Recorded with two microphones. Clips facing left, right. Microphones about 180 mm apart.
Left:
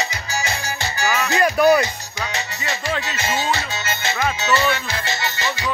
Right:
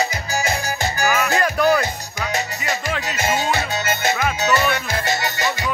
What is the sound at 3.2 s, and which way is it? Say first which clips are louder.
Music: right 5 dB; 50° right (ahead or behind).